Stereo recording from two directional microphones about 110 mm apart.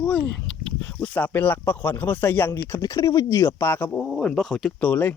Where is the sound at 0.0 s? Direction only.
10° left (ahead or behind).